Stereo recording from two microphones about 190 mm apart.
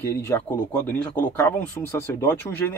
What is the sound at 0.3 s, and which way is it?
Speech, 15° left (ahead or behind).